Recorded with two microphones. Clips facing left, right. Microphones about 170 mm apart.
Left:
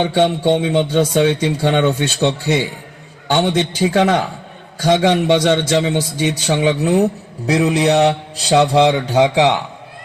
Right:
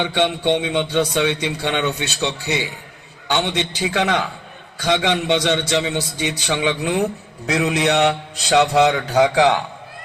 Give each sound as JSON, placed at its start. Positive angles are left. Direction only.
{"t": 0.0, "sound": "speech", "side_deg": 45}
{"t": 5.2, "sound": "a man's voice", "side_deg": 50}